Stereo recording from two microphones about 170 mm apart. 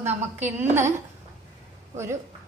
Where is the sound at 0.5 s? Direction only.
15° right (ahead or behind).